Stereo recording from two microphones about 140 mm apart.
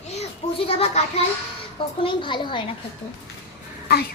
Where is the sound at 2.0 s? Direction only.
35° left (ahead or behind).